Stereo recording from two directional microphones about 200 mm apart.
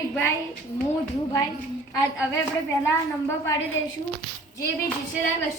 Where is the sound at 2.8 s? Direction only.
15° left (ahead or behind).